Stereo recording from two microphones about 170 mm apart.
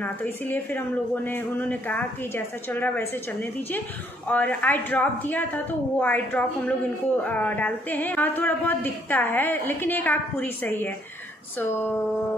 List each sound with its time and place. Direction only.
0.0 s speech: 10° left (ahead or behind)